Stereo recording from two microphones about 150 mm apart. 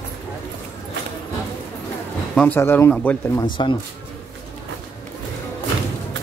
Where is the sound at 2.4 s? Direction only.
15° left (ahead or behind).